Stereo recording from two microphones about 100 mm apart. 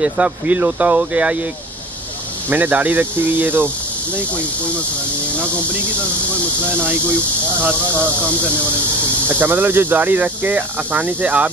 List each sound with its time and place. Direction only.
0.0 s speech: 15° right (ahead or behind)
2.5 s speech: 15° right (ahead or behind)
7.6 s speech: 25° right (ahead or behind)
9.3 s speech: 20° right (ahead or behind)